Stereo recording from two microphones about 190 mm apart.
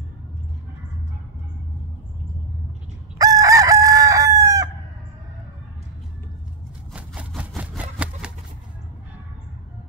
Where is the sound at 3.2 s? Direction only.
20° right (ahead or behind).